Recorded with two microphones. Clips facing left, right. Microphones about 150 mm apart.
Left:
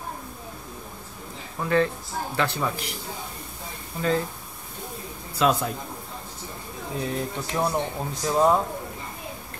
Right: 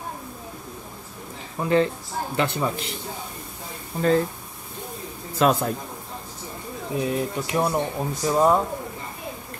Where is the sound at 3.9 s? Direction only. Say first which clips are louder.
Right 4 dB; 40° right (ahead or behind).